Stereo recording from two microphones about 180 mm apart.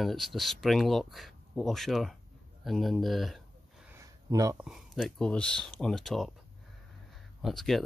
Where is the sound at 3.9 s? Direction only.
20° right (ahead or behind).